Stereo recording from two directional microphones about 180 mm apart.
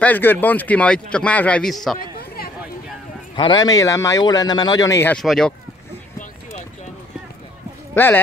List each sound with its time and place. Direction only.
0.0 s a man's voice: 10° left (ahead or behind)
2.1 s a sound: 55° left (ahead or behind)
3.3 s speech: 25° left (ahead or behind)
5.2 s speech: centre (ahead or behind)
7.9 s speech: 10° left (ahead or behind)